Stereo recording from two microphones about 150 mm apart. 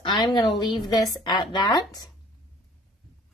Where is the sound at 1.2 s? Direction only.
25° left (ahead or behind).